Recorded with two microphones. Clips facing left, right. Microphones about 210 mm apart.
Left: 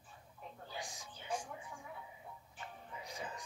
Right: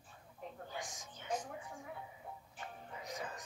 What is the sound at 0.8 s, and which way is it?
Music, 30° left (ahead or behind).